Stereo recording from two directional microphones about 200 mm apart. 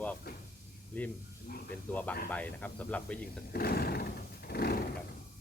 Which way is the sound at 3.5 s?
50° left (ahead or behind).